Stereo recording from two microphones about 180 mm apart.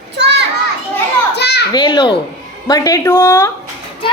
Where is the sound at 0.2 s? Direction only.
70° right (ahead or behind).